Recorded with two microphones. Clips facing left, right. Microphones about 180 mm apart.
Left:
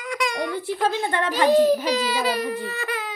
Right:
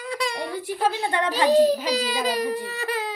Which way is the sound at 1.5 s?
40° right (ahead or behind).